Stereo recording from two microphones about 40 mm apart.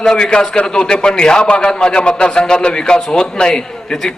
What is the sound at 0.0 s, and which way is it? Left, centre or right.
A man's voice, centre.